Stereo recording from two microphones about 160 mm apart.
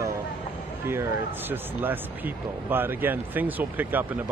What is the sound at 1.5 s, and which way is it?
A man's voice, 10° right (ahead or behind).